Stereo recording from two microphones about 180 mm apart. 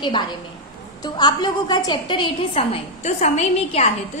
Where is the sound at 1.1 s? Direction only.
25° left (ahead or behind).